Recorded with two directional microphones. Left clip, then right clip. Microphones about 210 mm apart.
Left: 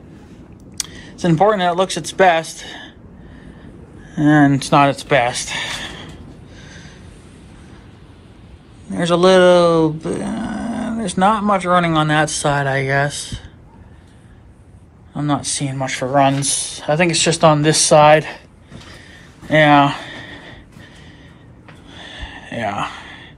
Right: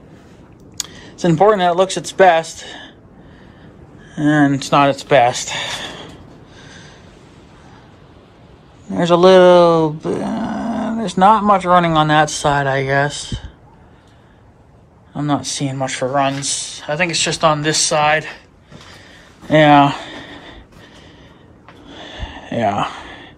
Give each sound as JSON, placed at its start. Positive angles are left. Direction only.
{"t": 0.7, "sound": "speech", "side_deg": -20}
{"t": 4.1, "sound": "speech", "side_deg": -15}
{"t": 6.5, "sound": "a sound", "side_deg": -20}
{"t": 8.9, "sound": "speech", "side_deg": -20}
{"t": 15.1, "sound": "speech", "side_deg": -20}
{"t": 16.4, "sound": "speech", "side_deg": -5}
{"t": 18.9, "sound": "a sound", "side_deg": -15}
{"t": 21.9, "sound": "gasp", "side_deg": -25}